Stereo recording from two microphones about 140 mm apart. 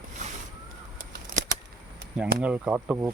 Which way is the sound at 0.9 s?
70° right (ahead or behind).